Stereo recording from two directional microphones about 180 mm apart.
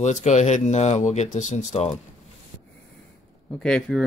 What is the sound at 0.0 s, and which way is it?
Speech, 40° left (ahead or behind).